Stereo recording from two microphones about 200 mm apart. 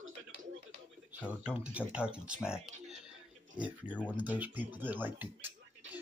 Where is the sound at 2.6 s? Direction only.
35° right (ahead or behind).